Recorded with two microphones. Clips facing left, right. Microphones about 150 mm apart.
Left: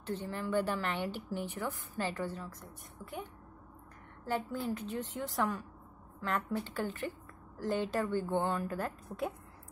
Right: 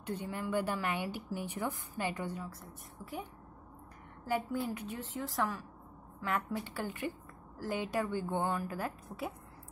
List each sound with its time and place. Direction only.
0.0 s a woman's voice: 10° right (ahead or behind)
4.3 s a woman's voice: 10° right (ahead or behind)